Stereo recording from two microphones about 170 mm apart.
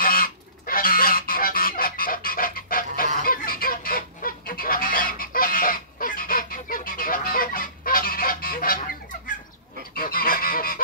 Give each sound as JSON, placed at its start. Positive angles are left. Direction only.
{"t": 0.0, "sound": "goose", "side_deg": 55}